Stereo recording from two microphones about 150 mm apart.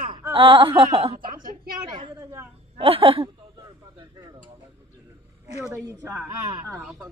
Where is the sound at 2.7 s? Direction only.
40° right (ahead or behind).